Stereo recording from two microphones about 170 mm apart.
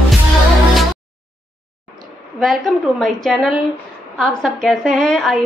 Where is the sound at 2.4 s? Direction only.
Centre (ahead or behind).